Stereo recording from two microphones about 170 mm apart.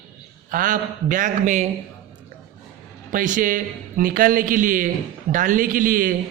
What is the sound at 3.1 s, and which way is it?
A man's voice, 50° right (ahead or behind).